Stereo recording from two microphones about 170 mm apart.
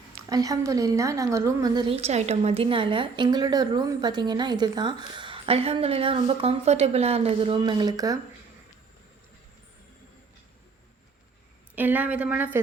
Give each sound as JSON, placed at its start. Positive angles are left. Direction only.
{"t": 0.3, "sound": "a woman's voice", "side_deg": -20}
{"t": 11.7, "sound": "a woman's voice", "side_deg": -10}